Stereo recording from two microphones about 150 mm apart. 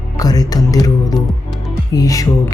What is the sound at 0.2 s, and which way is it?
Speech, 25° left (ahead or behind).